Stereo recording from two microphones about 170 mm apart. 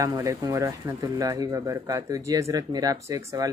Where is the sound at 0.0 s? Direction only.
20° right (ahead or behind).